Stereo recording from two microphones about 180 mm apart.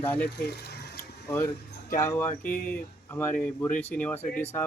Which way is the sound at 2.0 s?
15° left (ahead or behind).